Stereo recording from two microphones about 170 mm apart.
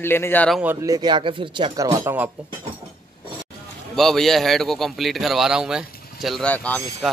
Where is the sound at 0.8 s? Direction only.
25° right (ahead or behind).